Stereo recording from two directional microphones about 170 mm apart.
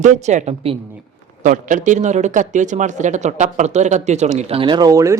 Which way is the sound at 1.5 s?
50° right (ahead or behind).